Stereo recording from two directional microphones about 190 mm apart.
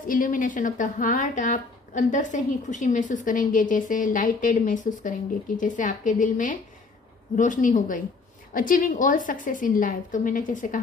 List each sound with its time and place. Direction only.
0.0 s speech: 45° left (ahead or behind)